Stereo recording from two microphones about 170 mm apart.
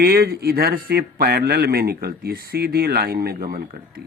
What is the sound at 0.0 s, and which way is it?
Speech, 65° right (ahead or behind).